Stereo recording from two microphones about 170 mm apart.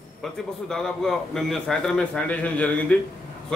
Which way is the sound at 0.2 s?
5° left (ahead or behind).